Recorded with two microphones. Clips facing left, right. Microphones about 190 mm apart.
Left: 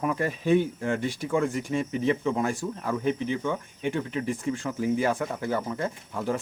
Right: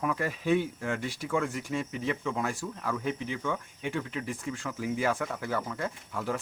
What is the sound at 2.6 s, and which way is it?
Speech, 15° left (ahead or behind).